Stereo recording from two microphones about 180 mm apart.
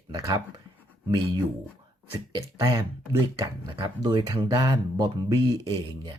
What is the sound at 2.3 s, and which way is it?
Speech, 20° right (ahead or behind).